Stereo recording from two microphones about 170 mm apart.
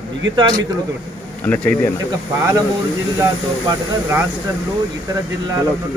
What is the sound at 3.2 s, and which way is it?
Speech, 15° right (ahead or behind).